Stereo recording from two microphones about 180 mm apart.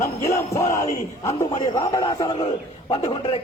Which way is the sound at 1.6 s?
20° left (ahead or behind).